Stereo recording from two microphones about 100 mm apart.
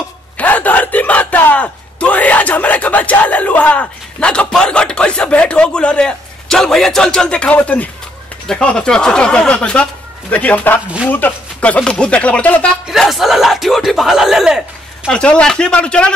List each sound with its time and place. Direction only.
0.4 s a sound: 15° left (ahead or behind)
8.5 s speech: 10° left (ahead or behind)
13.0 s speech: centre (ahead or behind)
15.0 s speech: 10° left (ahead or behind)